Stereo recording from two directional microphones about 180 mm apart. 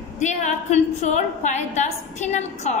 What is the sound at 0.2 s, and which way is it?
A woman's voice, 40° left (ahead or behind).